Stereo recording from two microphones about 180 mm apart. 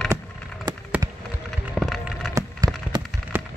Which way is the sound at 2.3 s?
20° right (ahead or behind).